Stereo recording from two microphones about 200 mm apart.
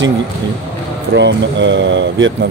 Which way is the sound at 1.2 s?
60° right (ahead or behind).